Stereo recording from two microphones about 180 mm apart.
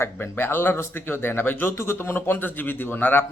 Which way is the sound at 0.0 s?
10° left (ahead or behind).